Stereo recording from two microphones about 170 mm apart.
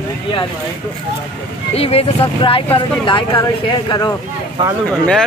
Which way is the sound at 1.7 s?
35° left (ahead or behind).